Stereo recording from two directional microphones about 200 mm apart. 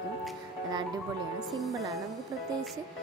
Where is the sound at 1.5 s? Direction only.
Centre (ahead or behind).